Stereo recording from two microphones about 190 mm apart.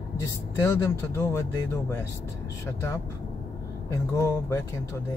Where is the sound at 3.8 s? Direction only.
15° left (ahead or behind).